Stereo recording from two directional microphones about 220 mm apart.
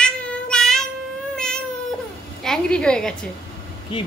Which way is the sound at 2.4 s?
5° left (ahead or behind).